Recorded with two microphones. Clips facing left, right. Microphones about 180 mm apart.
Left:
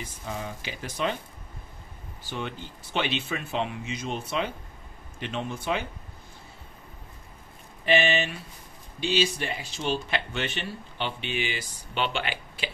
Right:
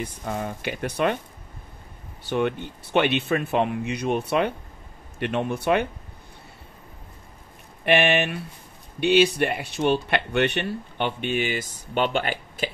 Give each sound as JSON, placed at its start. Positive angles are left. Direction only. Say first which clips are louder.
{"t": 0.0, "sound": "speech", "louder": "right 6 dB", "side_deg": -60}
{"t": 2.2, "sound": "speech", "louder": "right 10 dB", "side_deg": -60}
{"t": 7.8, "sound": "speech", "louder": "right 4 dB", "side_deg": -65}